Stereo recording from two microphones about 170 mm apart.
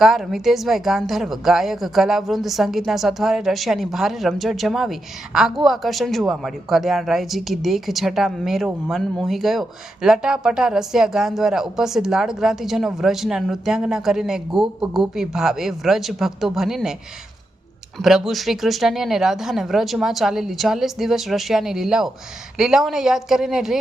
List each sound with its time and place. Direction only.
0.0 s a woman's voice: centre (ahead or behind)